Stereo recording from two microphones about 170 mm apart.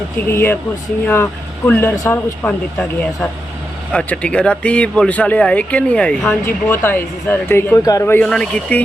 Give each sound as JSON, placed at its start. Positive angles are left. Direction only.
{"t": 0.3, "sound": "speech", "side_deg": 15}